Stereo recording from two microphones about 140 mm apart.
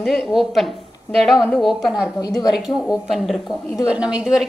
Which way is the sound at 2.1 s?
25° left (ahead or behind).